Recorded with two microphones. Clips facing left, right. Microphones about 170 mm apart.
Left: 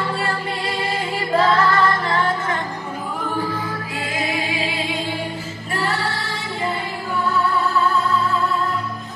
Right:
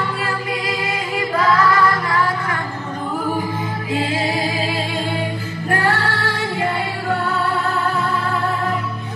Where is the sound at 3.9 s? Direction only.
25° right (ahead or behind); by 5.2 s 45° right (ahead or behind).